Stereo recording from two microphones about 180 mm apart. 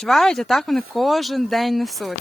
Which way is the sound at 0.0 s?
5° left (ahead or behind).